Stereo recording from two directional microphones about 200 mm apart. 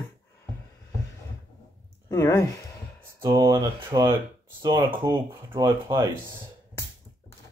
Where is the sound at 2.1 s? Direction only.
15° left (ahead or behind).